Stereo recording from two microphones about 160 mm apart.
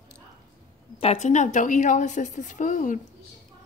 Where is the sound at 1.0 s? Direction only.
45° left (ahead or behind).